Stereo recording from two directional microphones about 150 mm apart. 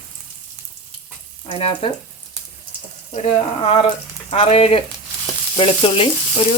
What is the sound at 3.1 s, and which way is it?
Speech, 45° left (ahead or behind).